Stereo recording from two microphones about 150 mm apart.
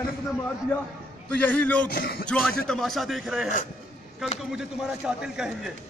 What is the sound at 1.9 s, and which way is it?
Speech, 85° left.